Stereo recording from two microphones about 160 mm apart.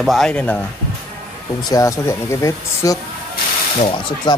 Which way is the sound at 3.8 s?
30° left (ahead or behind).